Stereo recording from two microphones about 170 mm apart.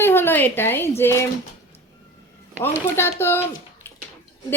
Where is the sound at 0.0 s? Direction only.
15° left (ahead or behind).